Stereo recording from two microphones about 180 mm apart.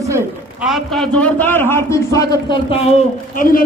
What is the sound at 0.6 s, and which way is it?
A man's voice, centre (ahead or behind).